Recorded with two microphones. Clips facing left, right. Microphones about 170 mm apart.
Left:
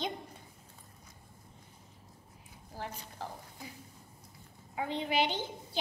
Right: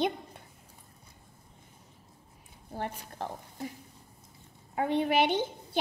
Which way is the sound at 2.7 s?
60° right (ahead or behind).